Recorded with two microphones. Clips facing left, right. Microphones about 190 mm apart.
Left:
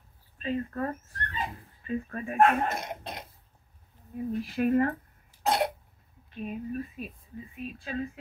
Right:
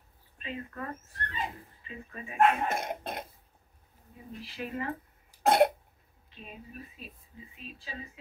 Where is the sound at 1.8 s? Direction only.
50° left (ahead or behind).